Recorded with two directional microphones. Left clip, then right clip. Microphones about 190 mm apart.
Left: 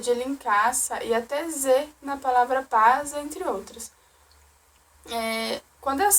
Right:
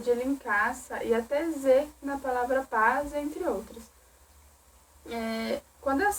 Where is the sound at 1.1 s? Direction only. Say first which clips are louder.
Left 1 dB; 10° left (ahead or behind).